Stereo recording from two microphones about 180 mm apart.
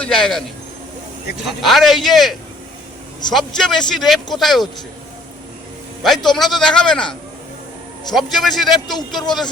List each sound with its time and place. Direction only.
0.0 s a man's voice: centre (ahead or behind)
1.5 s a man's voice: centre (ahead or behind)
3.3 s a man's voice: centre (ahead or behind)
6.3 s a man's voice: centre (ahead or behind)
9.0 s speech: 25° left (ahead or behind)